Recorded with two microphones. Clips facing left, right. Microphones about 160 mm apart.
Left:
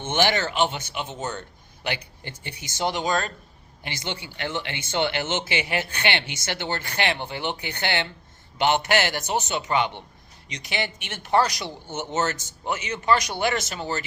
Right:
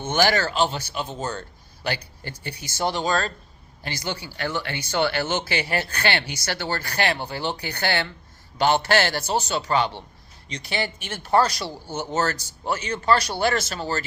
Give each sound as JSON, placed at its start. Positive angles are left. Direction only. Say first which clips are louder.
{"t": 0.0, "sound": "speech", "louder": "right 2 dB", "side_deg": 20}
{"t": 10.8, "sound": "speech", "louder": "right 2 dB", "side_deg": -40}
{"t": 11.4, "sound": "speech", "louder": "right 2 dB", "side_deg": 15}